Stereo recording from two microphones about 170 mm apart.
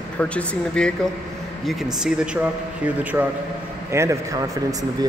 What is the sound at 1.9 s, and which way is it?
A man's voice, 5° right (ahead or behind).